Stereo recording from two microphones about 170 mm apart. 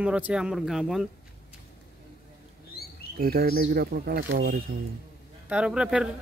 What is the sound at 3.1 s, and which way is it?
Speech, 65° right (ahead or behind).